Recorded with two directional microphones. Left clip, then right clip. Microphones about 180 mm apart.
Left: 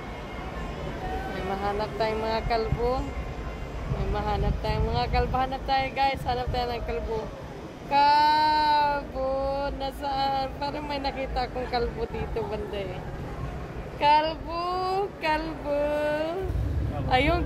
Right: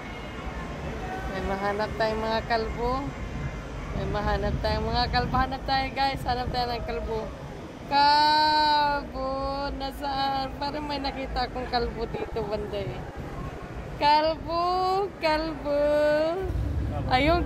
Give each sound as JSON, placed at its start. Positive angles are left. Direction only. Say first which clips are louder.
{"t": 1.5, "sound": "speech", "louder": "right 1 dB", "side_deg": -30}
{"t": 4.1, "sound": "speech", "louder": "right 1 dB", "side_deg": -30}
{"t": 7.9, "sound": "child singing", "louder": "even", "side_deg": -30}
{"t": 13.9, "sound": "speech", "louder": "even", "side_deg": -30}